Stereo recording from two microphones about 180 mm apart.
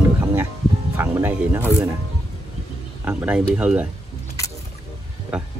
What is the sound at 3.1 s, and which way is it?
Speech, 5° right (ahead or behind).